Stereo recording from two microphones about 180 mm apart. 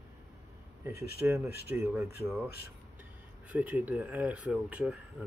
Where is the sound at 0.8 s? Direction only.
15° right (ahead or behind).